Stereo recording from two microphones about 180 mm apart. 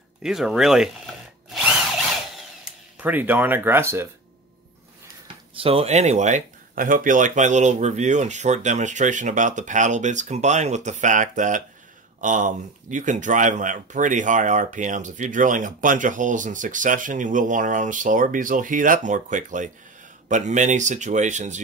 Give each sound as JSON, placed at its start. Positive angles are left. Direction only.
{"t": 0.2, "sound": "drill", "side_deg": 0}
{"t": 3.0, "sound": "speech", "side_deg": -10}
{"t": 5.6, "sound": "speech", "side_deg": -30}